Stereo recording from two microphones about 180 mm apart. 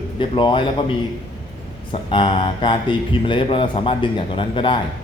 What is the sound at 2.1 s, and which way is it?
Speech, 30° left (ahead or behind).